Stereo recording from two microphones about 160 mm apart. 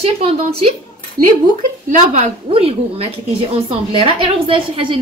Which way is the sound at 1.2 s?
75° right (ahead or behind).